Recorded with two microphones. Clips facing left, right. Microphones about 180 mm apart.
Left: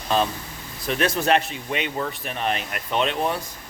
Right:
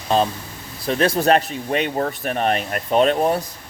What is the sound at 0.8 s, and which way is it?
Speech, 35° right (ahead or behind).